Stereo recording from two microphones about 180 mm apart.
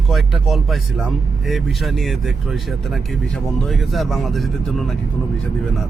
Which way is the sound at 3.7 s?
Centre (ahead or behind).